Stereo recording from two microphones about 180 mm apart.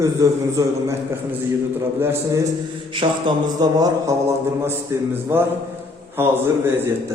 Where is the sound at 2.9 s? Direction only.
25° right (ahead or behind).